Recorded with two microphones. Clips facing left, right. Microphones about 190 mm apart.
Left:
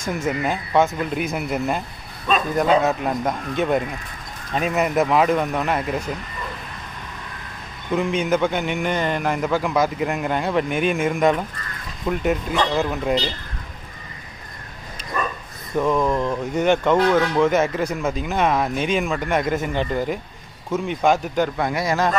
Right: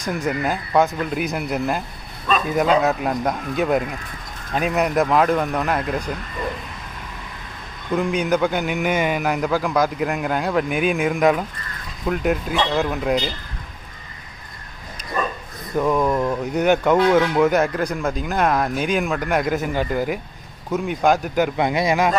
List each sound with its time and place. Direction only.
0.0 s speech: centre (ahead or behind)
7.9 s speech: centre (ahead or behind)
15.8 s speech: 5° right (ahead or behind)
21.5 s speech: 20° right (ahead or behind)